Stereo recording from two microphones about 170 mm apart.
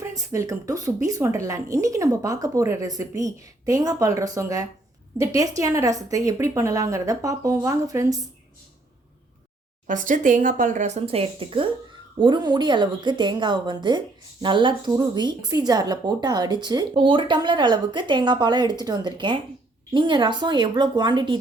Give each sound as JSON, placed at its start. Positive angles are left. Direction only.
{"t": 0.0, "sound": "speech", "side_deg": -20}
{"t": 9.8, "sound": "speech", "side_deg": -50}